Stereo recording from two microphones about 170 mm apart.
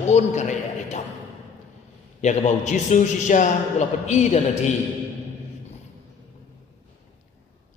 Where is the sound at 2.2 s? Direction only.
45° left (ahead or behind).